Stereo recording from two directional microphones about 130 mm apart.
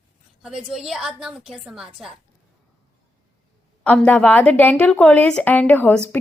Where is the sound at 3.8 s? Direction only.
10° left (ahead or behind).